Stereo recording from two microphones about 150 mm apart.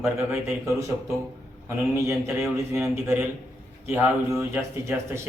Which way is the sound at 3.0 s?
15° right (ahead or behind).